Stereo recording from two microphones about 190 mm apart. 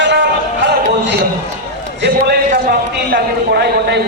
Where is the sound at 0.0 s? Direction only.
65° right (ahead or behind).